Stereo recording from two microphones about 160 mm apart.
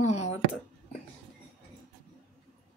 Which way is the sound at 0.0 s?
45° left (ahead or behind).